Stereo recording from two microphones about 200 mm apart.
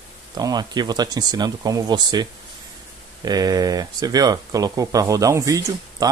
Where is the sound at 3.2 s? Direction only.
20° right (ahead or behind).